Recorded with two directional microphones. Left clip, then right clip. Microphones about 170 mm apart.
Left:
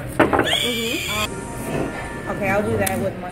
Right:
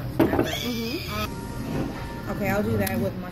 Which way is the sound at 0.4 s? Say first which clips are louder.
Left 7 dB; 15° left (ahead or behind).